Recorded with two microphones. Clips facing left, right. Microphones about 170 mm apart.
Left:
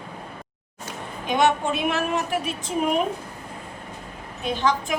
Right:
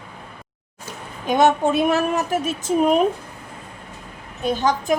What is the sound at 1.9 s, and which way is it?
Speech, 40° right (ahead or behind).